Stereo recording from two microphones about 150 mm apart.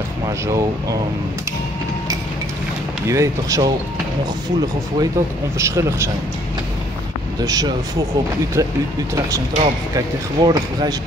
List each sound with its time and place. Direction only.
0.5 s speech: 20° right (ahead or behind)
3.1 s speech: 20° right (ahead or behind)
5.6 s speech: 20° right (ahead or behind)
7.3 s speech: 25° right (ahead or behind)
9.9 s speech: 25° right (ahead or behind)